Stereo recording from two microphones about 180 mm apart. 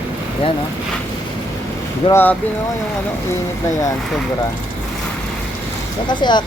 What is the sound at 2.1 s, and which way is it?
Speech, 10° left (ahead or behind).